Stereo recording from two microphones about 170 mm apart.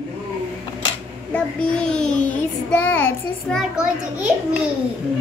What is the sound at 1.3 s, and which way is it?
Child singing, 5° left (ahead or behind).